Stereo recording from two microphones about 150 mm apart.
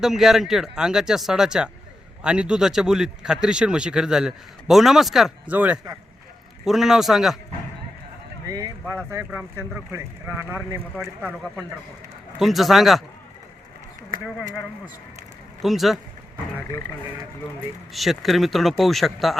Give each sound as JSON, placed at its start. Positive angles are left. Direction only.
{"t": 0.0, "sound": "a man's voice", "side_deg": 0}
{"t": 8.4, "sound": "speech", "side_deg": -20}
{"t": 10.9, "sound": "a man's voice", "side_deg": 0}
{"t": 12.4, "sound": "a man's voice", "side_deg": 0}
{"t": 15.6, "sound": "a man's voice", "side_deg": 0}
{"t": 17.9, "sound": "a man's voice", "side_deg": 0}